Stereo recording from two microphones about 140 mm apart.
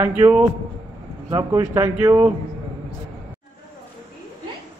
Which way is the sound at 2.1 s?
20° right (ahead or behind).